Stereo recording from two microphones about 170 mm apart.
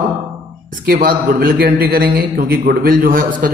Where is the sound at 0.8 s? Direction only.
55° right (ahead or behind).